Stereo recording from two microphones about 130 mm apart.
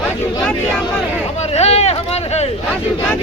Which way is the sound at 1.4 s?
55° left (ahead or behind).